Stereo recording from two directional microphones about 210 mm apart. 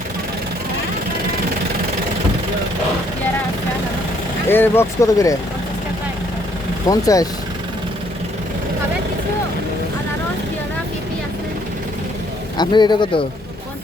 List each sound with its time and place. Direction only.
4.4 s speech: 10° left (ahead or behind)
6.8 s speech: 15° left (ahead or behind)
12.5 s a man's voice: 20° left (ahead or behind)